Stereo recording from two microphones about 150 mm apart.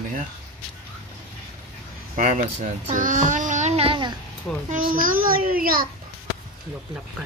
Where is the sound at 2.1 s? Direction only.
60° right (ahead or behind).